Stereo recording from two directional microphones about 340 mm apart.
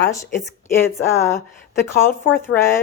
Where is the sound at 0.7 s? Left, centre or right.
Centre.